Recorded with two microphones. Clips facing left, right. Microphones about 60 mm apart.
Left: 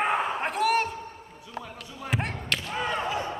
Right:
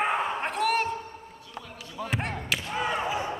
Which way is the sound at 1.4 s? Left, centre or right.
Centre.